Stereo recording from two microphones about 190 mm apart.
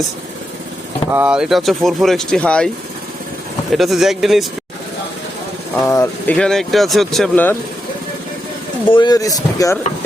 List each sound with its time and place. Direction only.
1.1 s speech: 5° right (ahead or behind)
3.7 s speech: centre (ahead or behind)
5.9 s speech: 15° left (ahead or behind)
6.3 s speech: 5° left (ahead or behind)
8.9 s speech: 25° left (ahead or behind)